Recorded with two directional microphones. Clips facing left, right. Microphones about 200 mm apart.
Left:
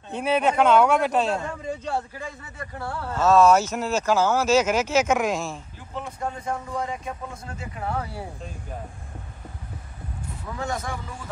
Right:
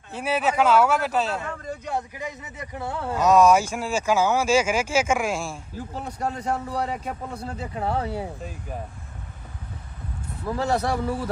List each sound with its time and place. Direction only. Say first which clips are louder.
0.1 s a man's voice: left 2 dB; 5° right (ahead or behind)
1.9 s speech: even; 15° right (ahead or behind)
6.1 s a man's voice: right 4 dB; 75° right (ahead or behind)
7.4 s speech: right 4 dB; 30° right (ahead or behind)
10.5 s speech: right 7 dB; 35° right (ahead or behind)